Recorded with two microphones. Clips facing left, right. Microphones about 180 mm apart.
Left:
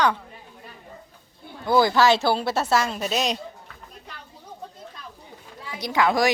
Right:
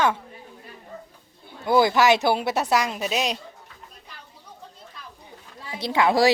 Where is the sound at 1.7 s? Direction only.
20° right (ahead or behind).